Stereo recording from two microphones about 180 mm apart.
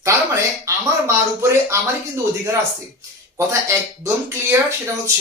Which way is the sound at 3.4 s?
15° right (ahead or behind).